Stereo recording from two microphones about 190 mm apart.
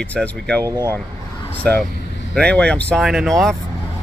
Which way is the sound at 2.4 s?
5° left (ahead or behind).